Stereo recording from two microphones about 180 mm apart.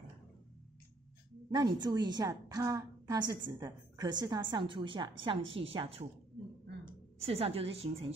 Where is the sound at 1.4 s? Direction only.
25° right (ahead or behind).